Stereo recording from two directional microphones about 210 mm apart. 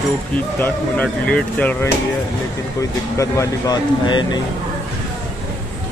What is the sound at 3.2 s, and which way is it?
Speech, 15° left (ahead or behind).